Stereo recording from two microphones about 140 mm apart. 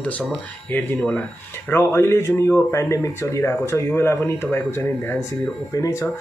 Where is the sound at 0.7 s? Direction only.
15° left (ahead or behind).